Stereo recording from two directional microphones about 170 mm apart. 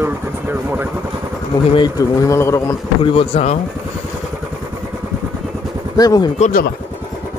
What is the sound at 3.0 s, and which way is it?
Speech, 35° left (ahead or behind).